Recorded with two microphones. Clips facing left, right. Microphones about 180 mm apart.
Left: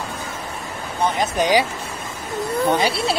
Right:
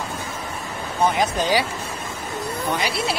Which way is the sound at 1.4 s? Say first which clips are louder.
Left 6 dB; 20° left (ahead or behind).